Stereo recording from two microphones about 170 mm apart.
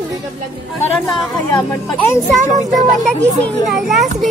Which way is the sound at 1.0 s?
Centre (ahead or behind).